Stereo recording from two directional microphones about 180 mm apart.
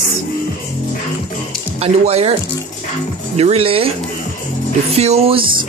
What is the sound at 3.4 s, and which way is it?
Speech, 35° right (ahead or behind).